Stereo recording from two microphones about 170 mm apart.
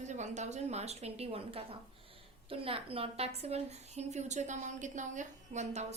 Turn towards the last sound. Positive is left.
turn(degrees=-40)  # may be behind; listen again after turning